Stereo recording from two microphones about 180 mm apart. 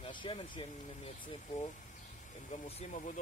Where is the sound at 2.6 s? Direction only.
40° left (ahead or behind).